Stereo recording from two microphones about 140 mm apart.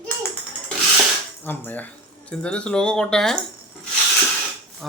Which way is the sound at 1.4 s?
15° left (ahead or behind).